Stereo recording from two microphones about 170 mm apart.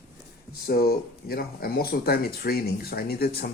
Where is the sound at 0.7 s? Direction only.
65° left (ahead or behind).